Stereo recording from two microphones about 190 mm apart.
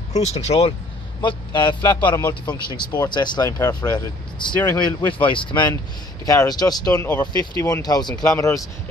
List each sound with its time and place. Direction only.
0.1 s speech: 35° left (ahead or behind); by 8.6 s 15° left (ahead or behind)